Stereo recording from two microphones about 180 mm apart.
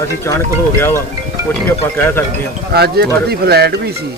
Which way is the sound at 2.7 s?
60° right (ahead or behind).